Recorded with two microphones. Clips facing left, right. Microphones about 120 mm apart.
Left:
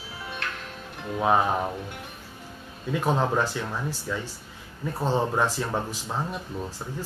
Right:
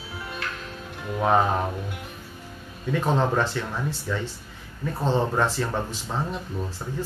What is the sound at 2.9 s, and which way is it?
Speech, 10° left (ahead or behind).